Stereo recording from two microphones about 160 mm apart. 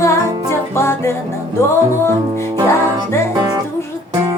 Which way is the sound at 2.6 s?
15° left (ahead or behind).